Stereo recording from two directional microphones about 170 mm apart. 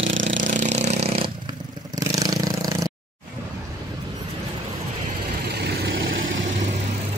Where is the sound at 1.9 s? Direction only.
20° right (ahead or behind).